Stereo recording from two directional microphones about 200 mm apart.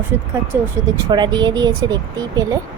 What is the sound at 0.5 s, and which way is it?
A woman's voice, 15° right (ahead or behind).